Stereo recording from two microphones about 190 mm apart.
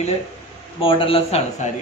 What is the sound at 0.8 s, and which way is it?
Speech, 30° left (ahead or behind).